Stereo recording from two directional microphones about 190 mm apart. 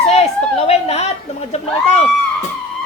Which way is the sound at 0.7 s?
35° left (ahead or behind).